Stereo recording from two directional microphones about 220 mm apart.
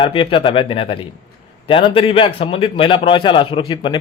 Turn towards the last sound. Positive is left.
turn(degrees=20)  # may be behind; listen again after turning